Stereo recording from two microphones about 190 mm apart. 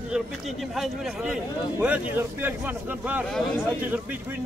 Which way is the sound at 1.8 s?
10° right (ahead or behind).